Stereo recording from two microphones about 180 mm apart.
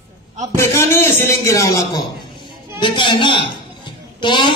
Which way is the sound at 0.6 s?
15° left (ahead or behind).